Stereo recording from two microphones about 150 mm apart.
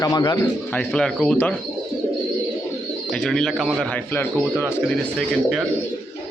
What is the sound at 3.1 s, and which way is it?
Speech, 5° left (ahead or behind).